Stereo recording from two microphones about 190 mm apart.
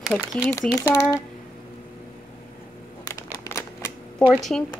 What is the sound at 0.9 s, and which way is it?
Speech, 15° left (ahead or behind).